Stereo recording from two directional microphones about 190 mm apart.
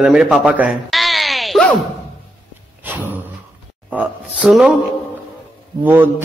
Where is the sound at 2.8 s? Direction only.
10° right (ahead or behind).